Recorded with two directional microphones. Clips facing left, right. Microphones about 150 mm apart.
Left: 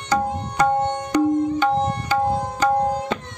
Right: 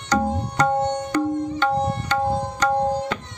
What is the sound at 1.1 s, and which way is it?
Tabla, 15° left (ahead or behind).